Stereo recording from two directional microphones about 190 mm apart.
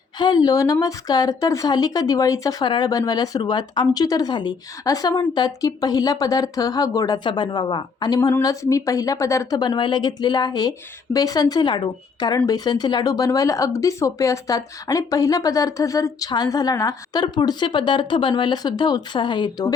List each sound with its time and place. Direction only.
0.2 s a woman's voice: 20° left (ahead or behind)